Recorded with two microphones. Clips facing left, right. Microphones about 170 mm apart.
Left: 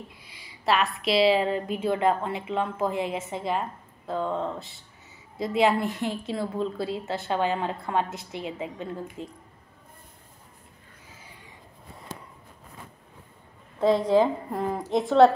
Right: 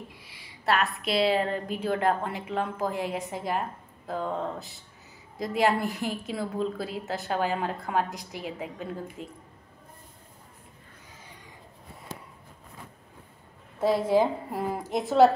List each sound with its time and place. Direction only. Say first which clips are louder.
0.1 s a woman's voice: even; centre (ahead or behind)
13.8 s a woman's voice: left 3 dB; 20° left (ahead or behind)
14.1 s a woman's voice: left 2 dB; 5° right (ahead or behind)